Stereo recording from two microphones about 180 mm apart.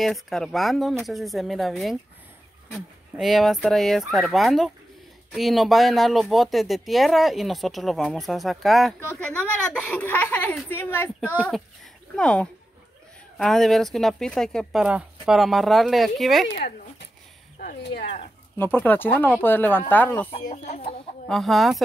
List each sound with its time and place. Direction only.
0.0 s speech: centre (ahead or behind)
11.1 s a child's voice: 10° right (ahead or behind)
12.2 s speech: 5° left (ahead or behind)
16.5 s a sound: 60° left (ahead or behind)
18.6 s speech: 10° left (ahead or behind)
20.4 s speech: 40° left (ahead or behind)
21.3 s speech: centre (ahead or behind)